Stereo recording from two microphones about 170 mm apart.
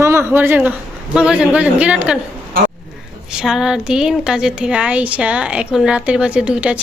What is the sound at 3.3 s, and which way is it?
A man's voice, 5° right (ahead or behind).